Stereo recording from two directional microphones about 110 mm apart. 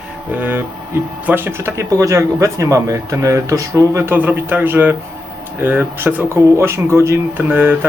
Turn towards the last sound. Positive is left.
turn(degrees=-20)  # may be behind; listen again after turning